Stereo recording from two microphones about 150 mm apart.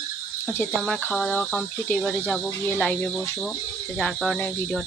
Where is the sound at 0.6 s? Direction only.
5° left (ahead or behind).